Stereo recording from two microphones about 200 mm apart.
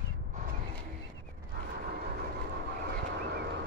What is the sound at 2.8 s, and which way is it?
Vehicle, 55° right (ahead or behind).